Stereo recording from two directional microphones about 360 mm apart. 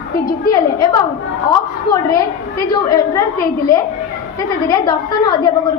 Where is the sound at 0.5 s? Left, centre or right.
Centre.